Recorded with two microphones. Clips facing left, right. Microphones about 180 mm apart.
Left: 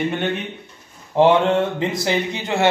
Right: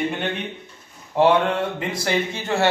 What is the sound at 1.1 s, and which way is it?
Speech, 25° left (ahead or behind).